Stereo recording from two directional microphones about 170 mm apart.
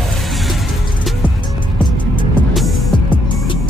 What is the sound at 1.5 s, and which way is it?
Music, 30° left (ahead or behind).